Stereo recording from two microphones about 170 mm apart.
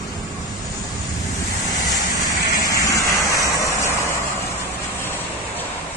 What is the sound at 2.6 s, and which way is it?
Vehicle, 20° left (ahead or behind).